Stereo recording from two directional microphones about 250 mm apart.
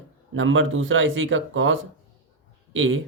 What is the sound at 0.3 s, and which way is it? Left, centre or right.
Speech, right.